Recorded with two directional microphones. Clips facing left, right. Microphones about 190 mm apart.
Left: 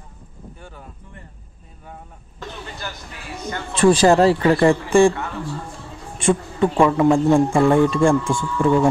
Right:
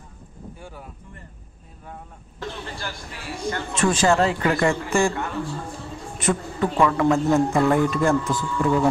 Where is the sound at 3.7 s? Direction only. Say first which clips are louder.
Left 6 dB; 35° left (ahead or behind).